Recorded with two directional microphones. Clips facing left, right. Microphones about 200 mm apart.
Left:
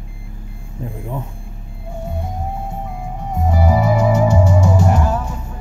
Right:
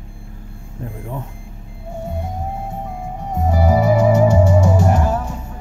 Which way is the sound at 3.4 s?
35° right (ahead or behind).